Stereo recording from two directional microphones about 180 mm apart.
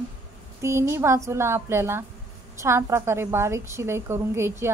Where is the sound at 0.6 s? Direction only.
15° right (ahead or behind).